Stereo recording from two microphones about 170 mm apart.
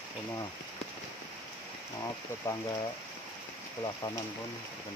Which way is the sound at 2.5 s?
15° left (ahead or behind).